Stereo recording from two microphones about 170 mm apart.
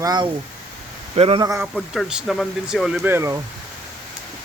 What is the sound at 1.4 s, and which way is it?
Speech, 20° right (ahead or behind).